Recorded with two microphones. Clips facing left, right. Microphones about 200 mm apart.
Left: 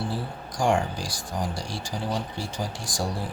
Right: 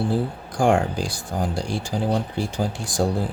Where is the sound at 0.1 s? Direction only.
55° right (ahead or behind).